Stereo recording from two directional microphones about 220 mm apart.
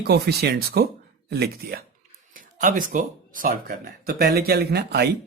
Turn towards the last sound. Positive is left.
turn(degrees=-50)  # may be behind; listen again after turning